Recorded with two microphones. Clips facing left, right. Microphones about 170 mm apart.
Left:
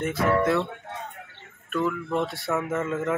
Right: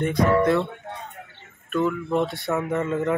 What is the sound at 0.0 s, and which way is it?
Speech, 5° left (ahead or behind).